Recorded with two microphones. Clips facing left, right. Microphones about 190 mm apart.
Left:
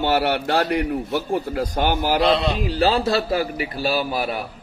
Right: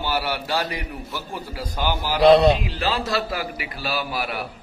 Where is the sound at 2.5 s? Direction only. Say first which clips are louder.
Left 6 dB; 40° left (ahead or behind).